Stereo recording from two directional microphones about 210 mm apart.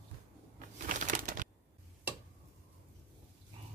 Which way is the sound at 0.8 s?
40° right (ahead or behind).